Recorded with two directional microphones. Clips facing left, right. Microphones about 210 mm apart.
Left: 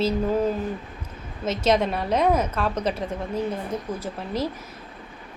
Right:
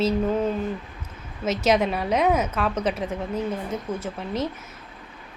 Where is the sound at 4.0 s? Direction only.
30° left (ahead or behind).